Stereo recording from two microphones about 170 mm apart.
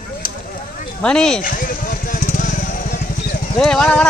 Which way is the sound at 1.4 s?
55° left (ahead or behind).